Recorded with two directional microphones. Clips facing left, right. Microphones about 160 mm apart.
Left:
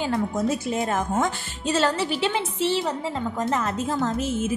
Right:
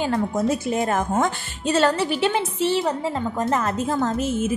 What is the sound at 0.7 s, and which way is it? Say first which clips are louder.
A woman's voice: right 3 dB; 60° right (ahead or behind).